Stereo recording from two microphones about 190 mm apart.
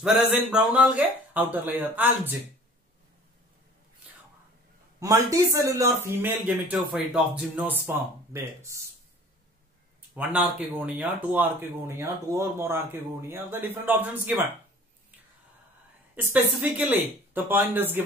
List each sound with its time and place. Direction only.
0.0 s speech: 5° right (ahead or behind)
5.0 s speech: 15° right (ahead or behind)
10.1 s speech: 10° right (ahead or behind)
16.3 s speech: 10° right (ahead or behind)